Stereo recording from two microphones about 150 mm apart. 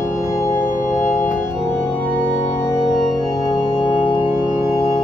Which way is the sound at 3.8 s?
10° right (ahead or behind).